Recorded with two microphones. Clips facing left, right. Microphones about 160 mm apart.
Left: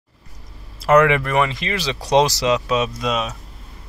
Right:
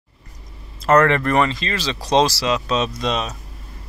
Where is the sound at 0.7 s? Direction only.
10° left (ahead or behind).